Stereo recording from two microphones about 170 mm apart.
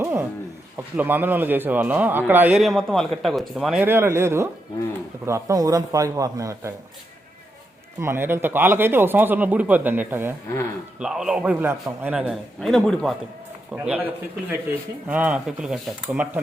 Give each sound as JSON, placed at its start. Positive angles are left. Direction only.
{"t": 0.0, "sound": "a sound", "side_deg": -15}
{"t": 0.9, "sound": "a man's voice", "side_deg": -10}
{"t": 8.0, "sound": "a man's voice", "side_deg": -15}
{"t": 12.5, "sound": "a man's voice", "side_deg": 5}
{"t": 13.7, "sound": "a man's voice", "side_deg": -10}